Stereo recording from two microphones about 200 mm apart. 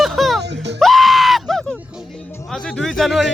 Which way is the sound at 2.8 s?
Centre (ahead or behind).